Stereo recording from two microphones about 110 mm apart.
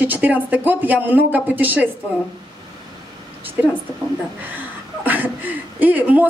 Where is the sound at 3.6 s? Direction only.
15° right (ahead or behind).